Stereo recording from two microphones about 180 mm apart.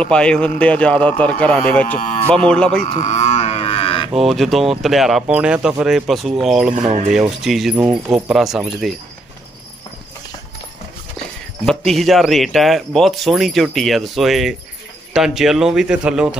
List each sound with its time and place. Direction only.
0.0 s a man's voice: 5° left (ahead or behind)
2.0 s speech: 45° left (ahead or behind)
2.4 s speech: 5° left (ahead or behind)
3.0 s livestock: 40° left (ahead or behind)
4.2 s speech: centre (ahead or behind)
6.9 s speech: 35° right (ahead or behind)
7.2 s speech: centre (ahead or behind)
11.6 s speech: 5° left (ahead or behind)